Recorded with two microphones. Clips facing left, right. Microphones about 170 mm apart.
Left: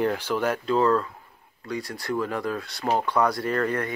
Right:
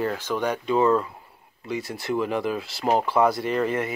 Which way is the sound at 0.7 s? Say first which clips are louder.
Right 2 dB; 15° right (ahead or behind).